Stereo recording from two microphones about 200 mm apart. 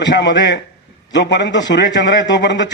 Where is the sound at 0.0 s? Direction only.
65° left (ahead or behind).